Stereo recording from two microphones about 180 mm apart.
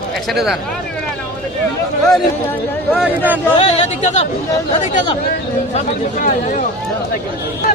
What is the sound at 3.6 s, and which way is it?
Speech, 35° left (ahead or behind).